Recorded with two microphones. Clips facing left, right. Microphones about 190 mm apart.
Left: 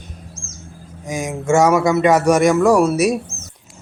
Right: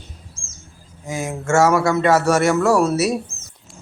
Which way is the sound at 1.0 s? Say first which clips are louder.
Left 2 dB; 15° left (ahead or behind).